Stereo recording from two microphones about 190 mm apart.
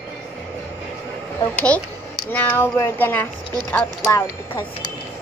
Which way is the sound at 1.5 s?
5° left (ahead or behind).